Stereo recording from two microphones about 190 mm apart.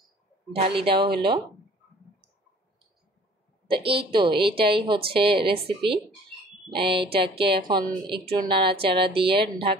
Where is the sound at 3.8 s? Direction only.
30° right (ahead or behind).